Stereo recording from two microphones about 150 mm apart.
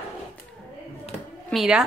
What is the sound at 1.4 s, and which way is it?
Speech, centre (ahead or behind).